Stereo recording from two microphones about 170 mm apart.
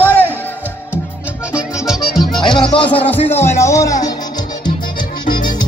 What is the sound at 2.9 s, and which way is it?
Speech, 35° left (ahead or behind).